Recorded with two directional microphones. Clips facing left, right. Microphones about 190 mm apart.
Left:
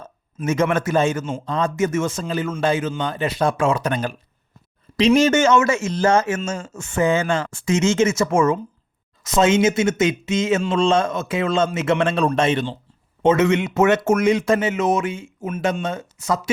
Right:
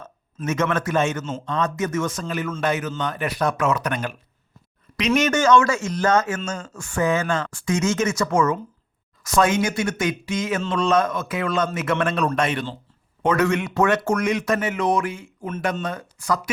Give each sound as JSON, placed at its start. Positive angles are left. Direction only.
{"t": 0.4, "sound": "speech", "side_deg": 30}
{"t": 6.4, "sound": "speech", "side_deg": 5}
{"t": 6.7, "sound": "speech", "side_deg": 25}